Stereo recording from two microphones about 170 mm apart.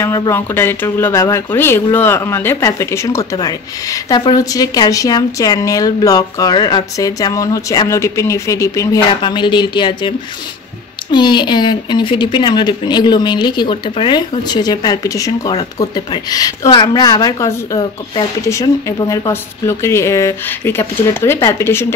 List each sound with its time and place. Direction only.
0.0 s speech: 15° left (ahead or behind)